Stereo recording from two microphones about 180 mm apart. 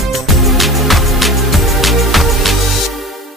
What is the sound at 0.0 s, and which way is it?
Music, centre (ahead or behind).